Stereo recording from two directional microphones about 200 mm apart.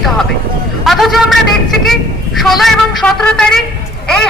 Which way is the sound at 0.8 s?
Centre (ahead or behind).